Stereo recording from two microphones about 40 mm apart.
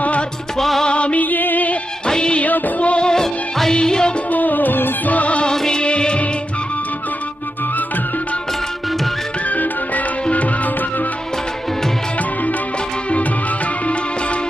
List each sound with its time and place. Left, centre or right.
0.0 s music: left
0.6 s music: centre
0.9 s music: left
1.2 s music: left
2.0 s music of bollywood: left
2.4 s music of bollywood: left
3.1 s music: centre
4.3 s music: left
5.1 s music: left
5.5 s music: centre
9.5 s music: left